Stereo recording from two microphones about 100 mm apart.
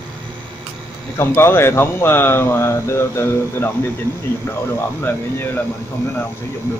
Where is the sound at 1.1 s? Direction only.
25° left (ahead or behind).